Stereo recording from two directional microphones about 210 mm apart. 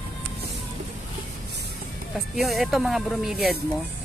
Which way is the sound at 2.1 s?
Centre (ahead or behind).